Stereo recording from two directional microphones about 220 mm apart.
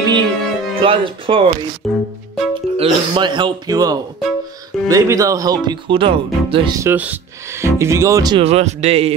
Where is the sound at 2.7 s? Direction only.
25° right (ahead or behind).